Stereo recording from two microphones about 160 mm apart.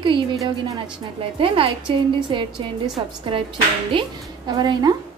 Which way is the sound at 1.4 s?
35° right (ahead or behind).